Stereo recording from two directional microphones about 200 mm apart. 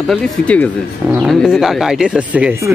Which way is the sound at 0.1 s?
5° left (ahead or behind).